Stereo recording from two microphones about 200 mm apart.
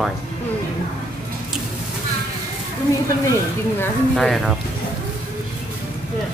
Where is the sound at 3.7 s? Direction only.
Centre (ahead or behind).